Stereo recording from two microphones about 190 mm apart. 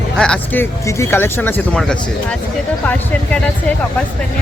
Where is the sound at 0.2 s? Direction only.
5° left (ahead or behind).